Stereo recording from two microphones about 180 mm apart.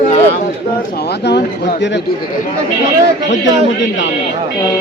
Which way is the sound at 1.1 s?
70° left (ahead or behind).